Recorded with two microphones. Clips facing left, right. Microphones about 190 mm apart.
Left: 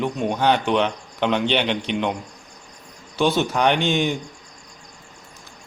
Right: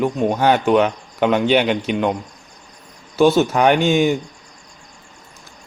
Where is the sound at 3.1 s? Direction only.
5° right (ahead or behind).